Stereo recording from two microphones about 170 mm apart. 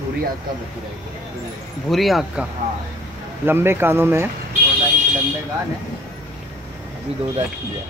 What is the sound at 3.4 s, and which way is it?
Speech, 15° right (ahead or behind).